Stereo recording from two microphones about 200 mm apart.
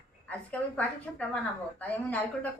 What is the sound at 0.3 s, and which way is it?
A woman's voice, 5° left (ahead or behind).